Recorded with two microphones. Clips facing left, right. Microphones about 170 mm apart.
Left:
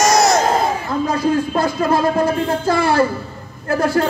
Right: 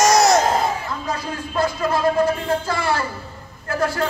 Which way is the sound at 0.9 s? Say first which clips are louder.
Left 9 dB; 40° left (ahead or behind).